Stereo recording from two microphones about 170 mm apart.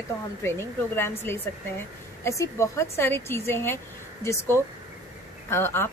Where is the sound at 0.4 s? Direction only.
15° left (ahead or behind).